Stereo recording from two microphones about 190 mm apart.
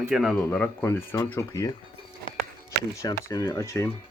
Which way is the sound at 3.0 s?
20° left (ahead or behind).